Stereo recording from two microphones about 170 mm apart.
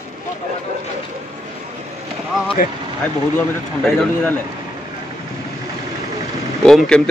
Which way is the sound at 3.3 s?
5° left (ahead or behind).